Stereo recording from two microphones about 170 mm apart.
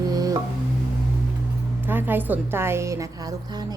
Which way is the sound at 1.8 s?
10° right (ahead or behind).